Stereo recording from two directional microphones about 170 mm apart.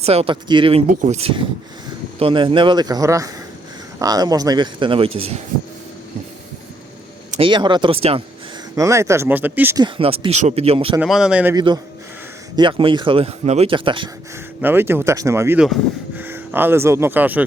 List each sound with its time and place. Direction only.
0.0 s speech: 35° right (ahead or behind)
7.3 s speech: 30° right (ahead or behind)
8.7 s speech: 20° right (ahead or behind)
9.7 s speech: 30° right (ahead or behind)
11.0 s speech: 5° right (ahead or behind)
11.5 s speech: 25° right (ahead or behind)
14.6 s speech: 10° right (ahead or behind)
15.5 s speech: 5° right (ahead or behind)